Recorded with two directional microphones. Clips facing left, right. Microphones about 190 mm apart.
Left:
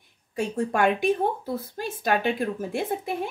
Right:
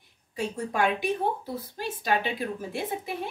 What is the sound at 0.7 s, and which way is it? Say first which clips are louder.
Speech: left 3 dB; 55° left (ahead or behind).